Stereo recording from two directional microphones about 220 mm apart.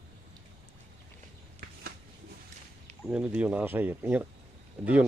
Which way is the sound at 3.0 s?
5° right (ahead or behind).